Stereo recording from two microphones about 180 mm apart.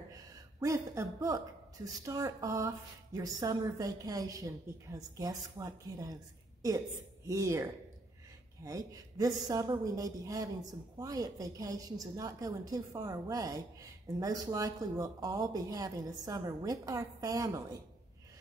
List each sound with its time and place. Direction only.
0.6 s a woman's voice: 15° right (ahead or behind)
7.2 s a woman's voice: 15° right (ahead or behind)